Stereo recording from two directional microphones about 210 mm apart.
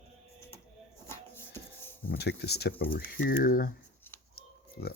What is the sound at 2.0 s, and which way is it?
Speech, 50° left (ahead or behind).